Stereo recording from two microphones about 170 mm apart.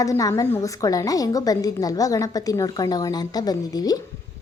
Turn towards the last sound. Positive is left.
turn(degrees=20)  # may be behind; listen again after turning